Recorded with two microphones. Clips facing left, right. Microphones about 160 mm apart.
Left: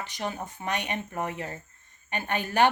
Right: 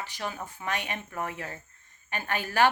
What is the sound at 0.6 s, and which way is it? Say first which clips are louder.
Speech: left 2 dB; 20° left (ahead or behind).